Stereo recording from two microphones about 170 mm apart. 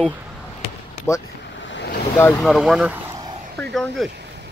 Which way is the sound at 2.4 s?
Centre (ahead or behind).